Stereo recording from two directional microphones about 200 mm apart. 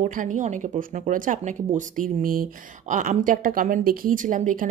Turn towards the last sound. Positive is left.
turn(degrees=-40)  # may be behind; listen again after turning